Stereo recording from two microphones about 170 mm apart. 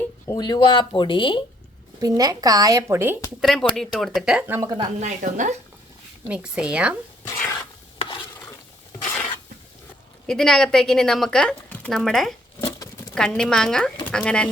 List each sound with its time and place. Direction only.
0.0 s speech: 20° left (ahead or behind)
2.0 s speech: 20° right (ahead or behind)
3.4 s a woman's voice: centre (ahead or behind); by 4.9 s 20° right (ahead or behind)
4.9 s a woman's voice: 45° right (ahead or behind)
6.2 s speech: 5° right (ahead or behind)
7.9 s stir: 25° left (ahead or behind)
10.2 s a woman's voice: 5° left (ahead or behind)
12.5 s a sound: 20° left (ahead or behind)
13.1 s a woman's voice: 5° left (ahead or behind)